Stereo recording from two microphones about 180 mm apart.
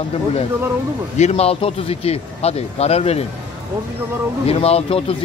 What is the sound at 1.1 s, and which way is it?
Speech, 35° left (ahead or behind).